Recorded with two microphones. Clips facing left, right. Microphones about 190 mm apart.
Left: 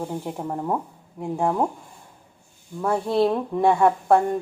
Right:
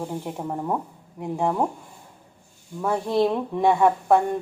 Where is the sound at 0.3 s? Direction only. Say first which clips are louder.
Left 1 dB; 5° left (ahead or behind).